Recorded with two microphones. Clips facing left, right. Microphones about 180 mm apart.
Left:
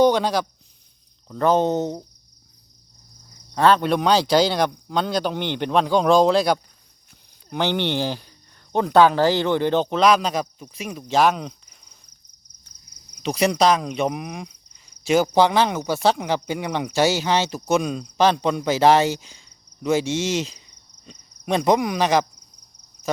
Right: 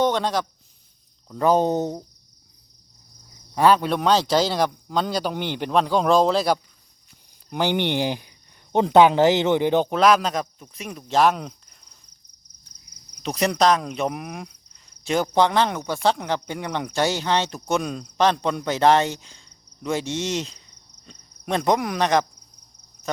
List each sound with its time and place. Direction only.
0.0 s speech: centre (ahead or behind)
3.5 s speech: 15° right (ahead or behind)
3.8 s speech: centre (ahead or behind)
13.2 s speech: centre (ahead or behind)